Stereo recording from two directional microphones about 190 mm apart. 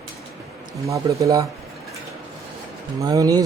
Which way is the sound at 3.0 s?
20° right (ahead or behind).